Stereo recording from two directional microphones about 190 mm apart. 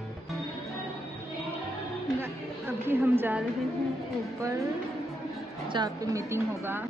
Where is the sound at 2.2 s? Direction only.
10° right (ahead or behind).